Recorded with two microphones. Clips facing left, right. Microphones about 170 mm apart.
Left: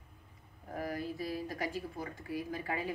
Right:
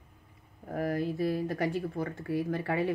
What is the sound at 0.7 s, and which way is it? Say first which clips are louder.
Speech: right 7 dB; 55° right (ahead or behind).